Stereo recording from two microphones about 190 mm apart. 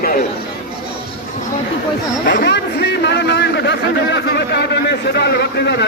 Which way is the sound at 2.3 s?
65° left (ahead or behind).